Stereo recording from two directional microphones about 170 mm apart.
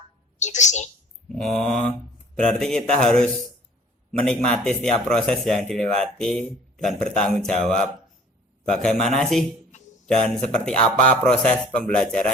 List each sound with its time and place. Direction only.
0.3 s a woman's voice: 45° left (ahead or behind)
1.3 s speech: centre (ahead or behind)